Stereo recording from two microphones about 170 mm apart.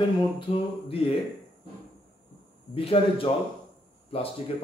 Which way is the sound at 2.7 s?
35° left (ahead or behind).